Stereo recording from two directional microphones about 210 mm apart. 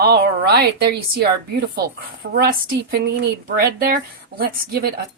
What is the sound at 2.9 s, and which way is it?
Speech, 50° right (ahead or behind).